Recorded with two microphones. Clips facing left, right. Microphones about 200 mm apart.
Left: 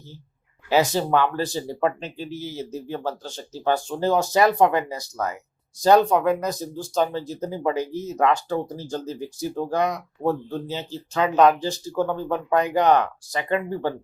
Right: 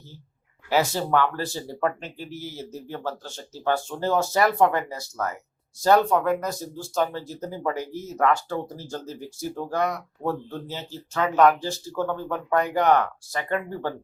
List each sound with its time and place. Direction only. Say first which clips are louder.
0.7 s speech: left 3 dB; 20° left (ahead or behind)